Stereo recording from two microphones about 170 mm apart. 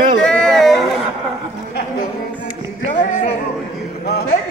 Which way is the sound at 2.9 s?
50° left (ahead or behind).